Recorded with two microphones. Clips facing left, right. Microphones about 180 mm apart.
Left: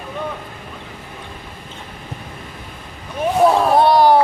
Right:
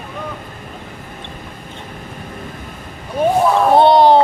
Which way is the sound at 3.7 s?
25° right (ahead or behind).